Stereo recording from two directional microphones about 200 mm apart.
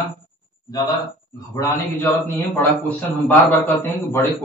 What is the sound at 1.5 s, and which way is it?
A man's voice, 15° left (ahead or behind).